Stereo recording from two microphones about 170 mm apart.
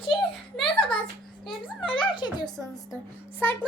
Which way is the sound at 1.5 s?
30° left (ahead or behind).